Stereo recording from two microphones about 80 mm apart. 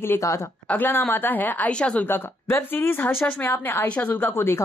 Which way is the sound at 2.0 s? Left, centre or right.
Left.